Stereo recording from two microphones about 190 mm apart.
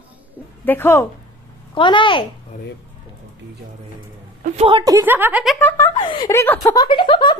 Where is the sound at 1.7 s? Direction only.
25° left (ahead or behind).